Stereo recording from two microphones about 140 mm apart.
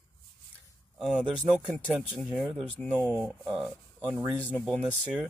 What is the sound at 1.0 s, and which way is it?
Speech, 5° right (ahead or behind).